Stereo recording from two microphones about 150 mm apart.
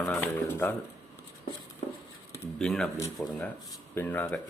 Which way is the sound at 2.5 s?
5° left (ahead or behind).